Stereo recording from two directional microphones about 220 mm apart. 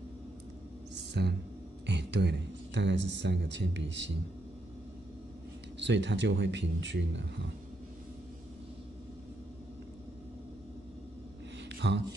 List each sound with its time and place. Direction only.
1.1 s speech: 50° right (ahead or behind)
5.8 s speech: 55° right (ahead or behind)
11.7 s a sound: 50° right (ahead or behind)